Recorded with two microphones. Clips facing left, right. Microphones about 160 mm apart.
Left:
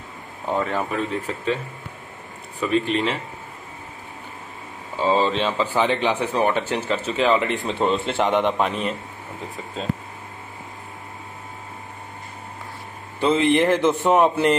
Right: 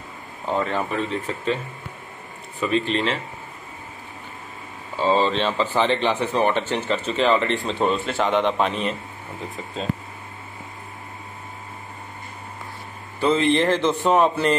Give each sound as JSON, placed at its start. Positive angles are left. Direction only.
{"t": 0.5, "sound": "speech", "side_deg": 5}
{"t": 2.6, "sound": "speech", "side_deg": 5}
{"t": 4.9, "sound": "speech", "side_deg": 10}
{"t": 8.0, "sound": "a man's voice", "side_deg": 20}
{"t": 8.5, "sound": "speech", "side_deg": 5}
{"t": 13.2, "sound": "a man's voice", "side_deg": 20}